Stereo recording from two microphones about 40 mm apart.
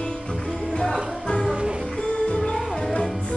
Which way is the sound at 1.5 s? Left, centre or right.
Right.